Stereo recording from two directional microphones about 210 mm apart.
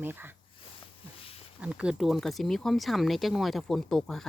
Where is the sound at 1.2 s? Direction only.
25° left (ahead or behind).